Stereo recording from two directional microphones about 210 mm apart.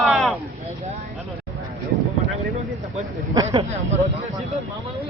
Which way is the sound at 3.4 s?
25° right (ahead or behind).